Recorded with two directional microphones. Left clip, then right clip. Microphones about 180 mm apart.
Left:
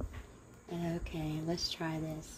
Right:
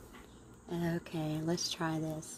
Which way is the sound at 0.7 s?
50° right (ahead or behind).